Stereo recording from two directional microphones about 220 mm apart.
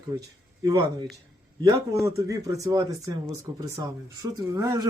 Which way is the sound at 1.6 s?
15° right (ahead or behind).